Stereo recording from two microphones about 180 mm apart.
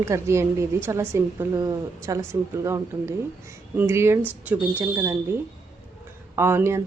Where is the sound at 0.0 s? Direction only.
15° right (ahead or behind).